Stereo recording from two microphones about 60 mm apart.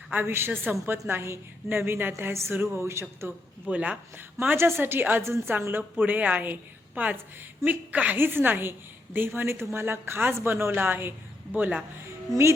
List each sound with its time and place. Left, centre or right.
0.1 s a woman's voice: right
3.7 s a woman's voice: right
4.4 s a woman's voice: right
5.2 s speech: right
6.0 s a woman's voice: right
8.2 s a woman's voice: right
11.5 s a woman's voice: right